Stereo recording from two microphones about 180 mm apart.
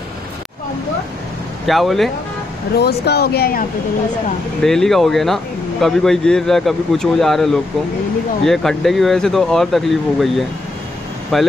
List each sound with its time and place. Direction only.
1.7 s speech: centre (ahead or behind)
2.7 s speech: 65° left (ahead or behind)
4.6 s speech: centre (ahead or behind)